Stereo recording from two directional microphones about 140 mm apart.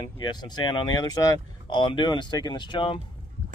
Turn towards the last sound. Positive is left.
turn(degrees=40)  # may be behind; listen again after turning